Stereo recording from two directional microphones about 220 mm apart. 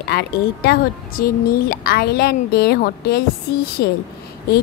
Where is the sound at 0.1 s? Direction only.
45° left (ahead or behind).